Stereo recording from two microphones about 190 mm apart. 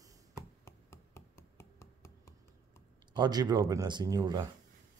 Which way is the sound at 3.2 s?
20° right (ahead or behind).